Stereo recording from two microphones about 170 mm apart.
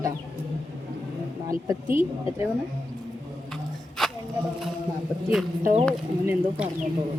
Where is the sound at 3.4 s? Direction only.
Centre (ahead or behind).